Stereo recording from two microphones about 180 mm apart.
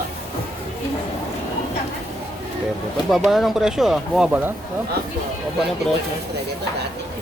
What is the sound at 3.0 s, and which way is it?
Speech, centre (ahead or behind).